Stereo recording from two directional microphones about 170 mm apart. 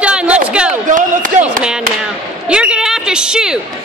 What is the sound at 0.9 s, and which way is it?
Speech, 50° right (ahead or behind).